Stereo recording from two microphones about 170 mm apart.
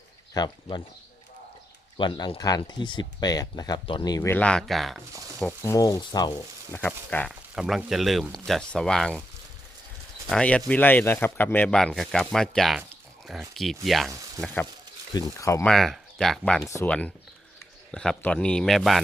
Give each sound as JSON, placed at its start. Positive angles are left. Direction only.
{"t": 0.3, "sound": "speech", "side_deg": 25}
{"t": 2.0, "sound": "speech", "side_deg": 25}
{"t": 5.4, "sound": "speech", "side_deg": 15}
{"t": 6.7, "sound": "speech", "side_deg": 10}
{"t": 7.3, "sound": "speech", "side_deg": -5}
{"t": 10.2, "sound": "speech", "side_deg": 5}
{"t": 15.1, "sound": "speech", "side_deg": 20}
{"t": 15.6, "sound": "speech", "side_deg": 0}
{"t": 16.6, "sound": "speech", "side_deg": 20}
{"t": 17.9, "sound": "speech", "side_deg": 5}